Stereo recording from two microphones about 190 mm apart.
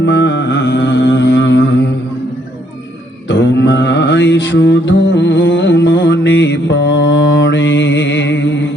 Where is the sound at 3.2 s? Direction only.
70° left (ahead or behind).